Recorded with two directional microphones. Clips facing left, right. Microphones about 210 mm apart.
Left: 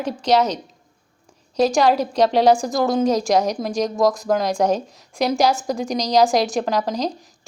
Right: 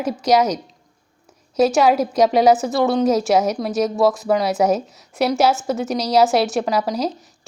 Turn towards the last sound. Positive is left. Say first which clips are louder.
# right 1 dB
turn(degrees=-5)  # may be behind; listen again after turning